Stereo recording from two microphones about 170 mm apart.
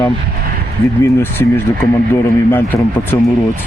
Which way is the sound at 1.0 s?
15° left (ahead or behind).